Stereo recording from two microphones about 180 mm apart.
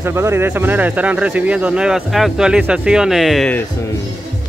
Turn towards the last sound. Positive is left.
turn(degrees=5)  # may be behind; listen again after turning